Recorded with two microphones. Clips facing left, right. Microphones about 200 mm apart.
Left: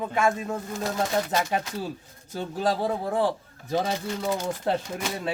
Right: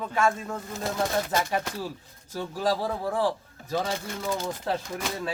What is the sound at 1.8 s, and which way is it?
Speech, 20° left (ahead or behind).